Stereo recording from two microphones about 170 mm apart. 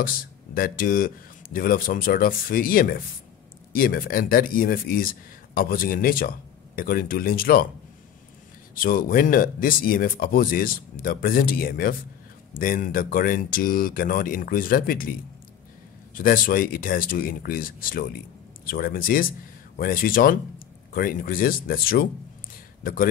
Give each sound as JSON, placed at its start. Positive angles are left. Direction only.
{"t": 0.0, "sound": "speech", "side_deg": 55}
{"t": 8.7, "sound": "speech", "side_deg": 55}
{"t": 16.2, "sound": "a man's voice", "side_deg": 55}